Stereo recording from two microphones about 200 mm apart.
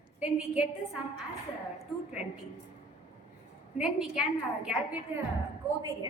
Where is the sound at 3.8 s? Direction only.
5° right (ahead or behind).